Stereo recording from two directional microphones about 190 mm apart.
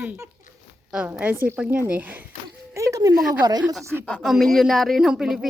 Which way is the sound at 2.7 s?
15° right (ahead or behind).